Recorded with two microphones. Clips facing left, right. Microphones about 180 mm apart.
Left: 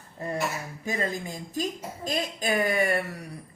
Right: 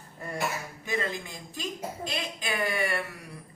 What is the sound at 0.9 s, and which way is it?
A woman's voice, 40° left (ahead or behind).